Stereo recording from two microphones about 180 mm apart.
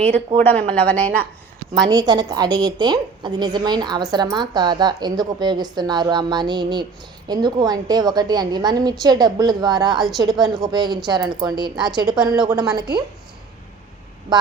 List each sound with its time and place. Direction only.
0.7 s speech: 5° left (ahead or behind)
1.9 s a woman's voice: 20° right (ahead or behind)